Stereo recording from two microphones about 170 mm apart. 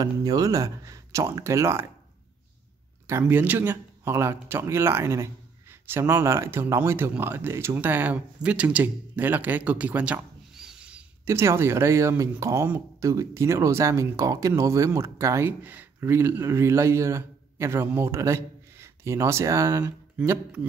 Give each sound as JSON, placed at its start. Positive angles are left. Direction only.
{"t": 0.0, "sound": "speech", "side_deg": -20}
{"t": 3.1, "sound": "speech", "side_deg": -10}